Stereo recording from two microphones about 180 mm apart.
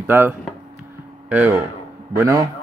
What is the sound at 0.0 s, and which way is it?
Speech, 10° right (ahead or behind).